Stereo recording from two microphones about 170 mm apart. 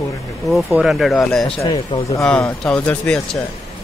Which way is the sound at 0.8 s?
Centre (ahead or behind).